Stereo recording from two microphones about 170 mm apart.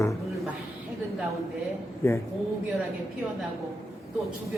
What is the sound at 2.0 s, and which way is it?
Speech, 15° left (ahead or behind).